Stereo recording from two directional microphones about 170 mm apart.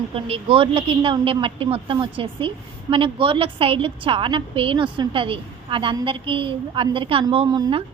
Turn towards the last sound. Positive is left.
turn(degrees=-30)  # may be behind; listen again after turning